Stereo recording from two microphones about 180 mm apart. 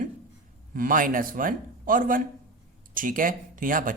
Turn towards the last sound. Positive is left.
turn(degrees=-50)  # may be behind; listen again after turning